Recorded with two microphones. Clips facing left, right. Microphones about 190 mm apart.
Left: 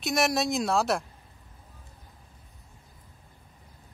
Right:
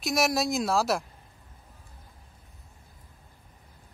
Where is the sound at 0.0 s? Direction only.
Centre (ahead or behind).